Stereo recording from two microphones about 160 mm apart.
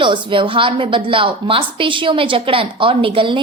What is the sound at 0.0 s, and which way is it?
A woman's voice, 30° right (ahead or behind).